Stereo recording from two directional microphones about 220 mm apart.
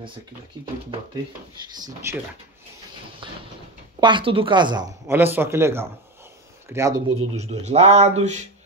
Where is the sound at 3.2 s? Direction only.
20° right (ahead or behind).